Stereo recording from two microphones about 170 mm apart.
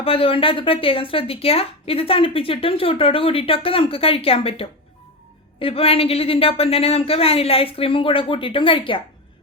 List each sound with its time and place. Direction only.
0.0 s speech: 35° left (ahead or behind)